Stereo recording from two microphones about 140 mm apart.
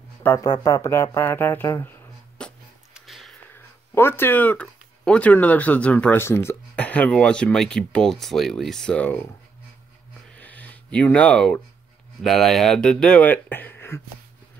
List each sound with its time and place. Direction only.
0.4 s speech: 25° left (ahead or behind)
2.4 s music: 5° left (ahead or behind)
2.9 s a sound: centre (ahead or behind)
3.5 s speech: 15° left (ahead or behind)
10.3 s a sound: 10° left (ahead or behind)
12.2 s speech: centre (ahead or behind); by 14.0 s 15° left (ahead or behind)